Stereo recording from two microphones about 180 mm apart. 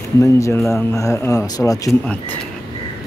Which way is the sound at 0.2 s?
15° left (ahead or behind).